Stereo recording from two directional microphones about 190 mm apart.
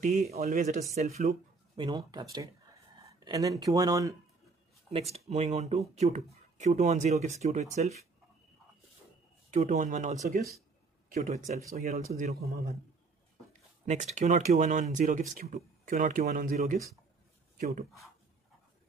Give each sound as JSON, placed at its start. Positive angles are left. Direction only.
{"t": 0.0, "sound": "speech", "side_deg": -35}
{"t": 0.4, "sound": "speech", "side_deg": -50}
{"t": 1.8, "sound": "speech", "side_deg": -25}
{"t": 5.1, "sound": "speech", "side_deg": -35}
{"t": 9.5, "sound": "speech", "side_deg": -40}
{"t": 11.1, "sound": "speech", "side_deg": -40}
{"t": 13.8, "sound": "speech", "side_deg": -40}